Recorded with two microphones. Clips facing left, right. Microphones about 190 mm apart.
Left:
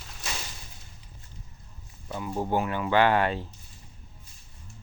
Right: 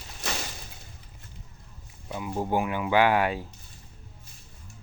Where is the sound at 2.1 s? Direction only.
10° right (ahead or behind).